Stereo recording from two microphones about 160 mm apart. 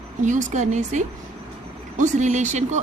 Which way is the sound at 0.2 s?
50° right (ahead or behind).